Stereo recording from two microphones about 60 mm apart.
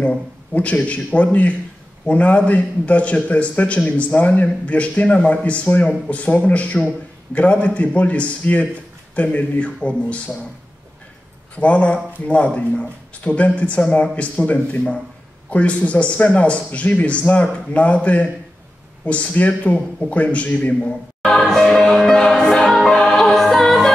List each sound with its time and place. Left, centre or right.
0.0 s a man's voice: centre
11.5 s a man's voice: left
21.2 s music: centre